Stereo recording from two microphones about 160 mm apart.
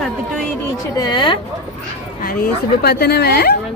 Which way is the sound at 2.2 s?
65° left (ahead or behind).